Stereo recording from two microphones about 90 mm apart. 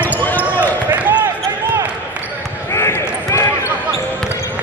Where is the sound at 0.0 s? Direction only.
20° left (ahead or behind).